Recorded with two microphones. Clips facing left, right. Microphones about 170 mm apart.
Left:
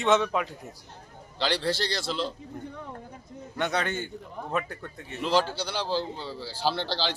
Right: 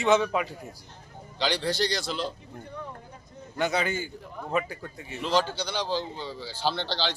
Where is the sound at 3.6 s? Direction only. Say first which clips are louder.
Right 1 dB; centre (ahead or behind).